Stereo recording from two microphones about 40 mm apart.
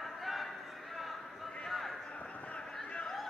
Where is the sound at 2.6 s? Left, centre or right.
Centre.